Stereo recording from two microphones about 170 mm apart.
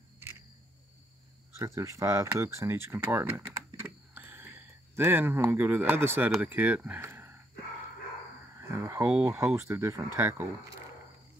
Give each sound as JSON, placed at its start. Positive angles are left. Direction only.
{"t": 1.6, "sound": "speech", "side_deg": -20}
{"t": 8.5, "sound": "speech", "side_deg": -15}